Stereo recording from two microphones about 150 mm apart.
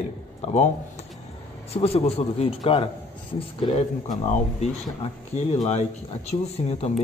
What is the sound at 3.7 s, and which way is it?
Speech, 50° left (ahead or behind).